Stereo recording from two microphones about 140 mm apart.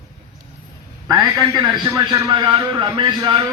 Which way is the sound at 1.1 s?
30° right (ahead or behind).